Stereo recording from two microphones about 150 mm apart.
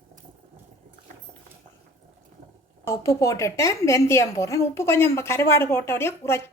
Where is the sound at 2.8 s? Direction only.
20° left (ahead or behind).